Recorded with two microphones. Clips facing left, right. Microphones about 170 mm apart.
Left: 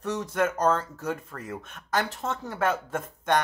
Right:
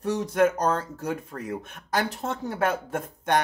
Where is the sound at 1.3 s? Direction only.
30° right (ahead or behind).